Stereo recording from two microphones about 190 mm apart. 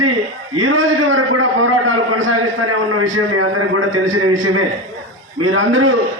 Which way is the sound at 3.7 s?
90° right.